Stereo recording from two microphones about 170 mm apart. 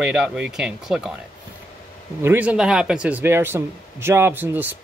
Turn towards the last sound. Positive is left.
turn(degrees=-10)  # may be behind; listen again after turning